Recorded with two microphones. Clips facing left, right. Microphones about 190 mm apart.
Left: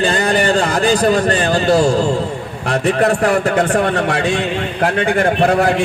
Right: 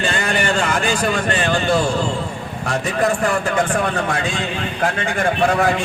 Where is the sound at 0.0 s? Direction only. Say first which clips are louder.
Left 6 dB; 35° left (ahead or behind).